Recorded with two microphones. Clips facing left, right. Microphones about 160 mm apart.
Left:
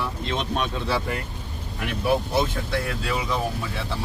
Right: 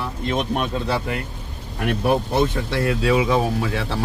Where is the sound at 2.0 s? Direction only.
60° right (ahead or behind); by 4.0 s 90° right.